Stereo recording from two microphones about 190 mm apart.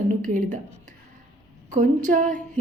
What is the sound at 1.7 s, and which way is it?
Speech, 40° right (ahead or behind).